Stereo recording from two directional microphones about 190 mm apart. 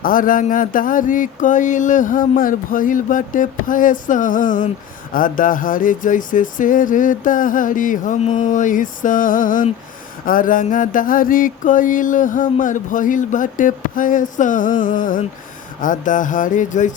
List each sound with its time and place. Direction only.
0.0 s mantra: 45° left (ahead or behind)